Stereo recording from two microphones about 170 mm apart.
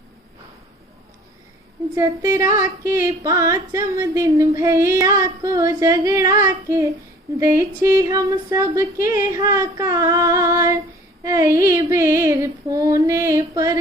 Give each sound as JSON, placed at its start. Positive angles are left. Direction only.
{"t": 2.0, "sound": "female singing", "side_deg": -15}
{"t": 7.8, "sound": "speech", "side_deg": -20}
{"t": 11.2, "sound": "female singing", "side_deg": -20}